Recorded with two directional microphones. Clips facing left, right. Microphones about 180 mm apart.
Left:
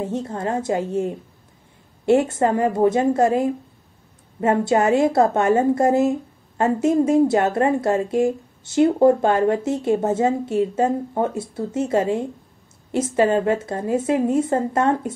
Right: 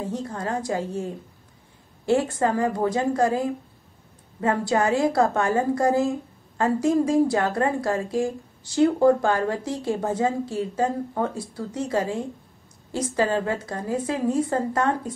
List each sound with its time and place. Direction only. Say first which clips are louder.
0.0 s a woman's voice: left 4 dB; 25° left (ahead or behind)